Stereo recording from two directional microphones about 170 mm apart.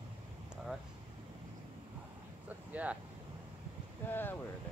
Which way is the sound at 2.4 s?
10° right (ahead or behind).